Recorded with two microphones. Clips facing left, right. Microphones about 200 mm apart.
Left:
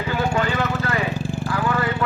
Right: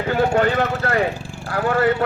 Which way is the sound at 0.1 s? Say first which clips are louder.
Right 5 dB; 55° right (ahead or behind).